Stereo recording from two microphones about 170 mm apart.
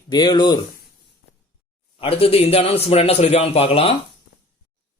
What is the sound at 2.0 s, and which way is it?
Speech, 35° left (ahead or behind).